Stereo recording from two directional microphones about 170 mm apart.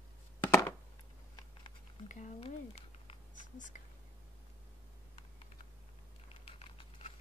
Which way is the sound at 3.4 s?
50° left (ahead or behind).